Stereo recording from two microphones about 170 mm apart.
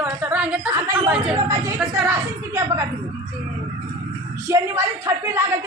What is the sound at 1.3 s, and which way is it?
A woman's voice, 20° right (ahead or behind).